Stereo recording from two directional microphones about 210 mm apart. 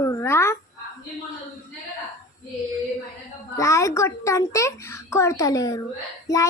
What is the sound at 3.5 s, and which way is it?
Speech, 15° left (ahead or behind).